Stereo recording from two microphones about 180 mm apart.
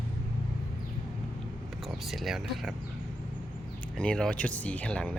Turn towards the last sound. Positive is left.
turn(degrees=5)  # may be behind; listen again after turning